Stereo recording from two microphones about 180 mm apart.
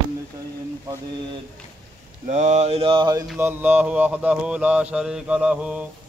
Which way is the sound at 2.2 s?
40° right (ahead or behind).